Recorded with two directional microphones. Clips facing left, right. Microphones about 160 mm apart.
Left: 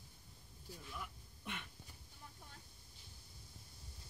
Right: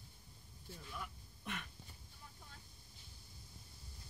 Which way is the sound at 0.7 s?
15° left (ahead or behind).